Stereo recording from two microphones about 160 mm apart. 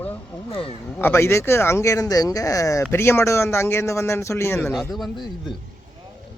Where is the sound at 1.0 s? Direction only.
15° left (ahead or behind).